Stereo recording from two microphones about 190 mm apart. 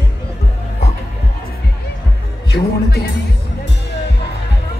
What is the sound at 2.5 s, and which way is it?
Speech, 55° left (ahead or behind).